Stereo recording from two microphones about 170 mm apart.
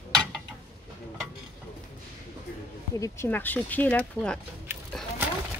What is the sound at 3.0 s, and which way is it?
Speech, 15° left (ahead or behind).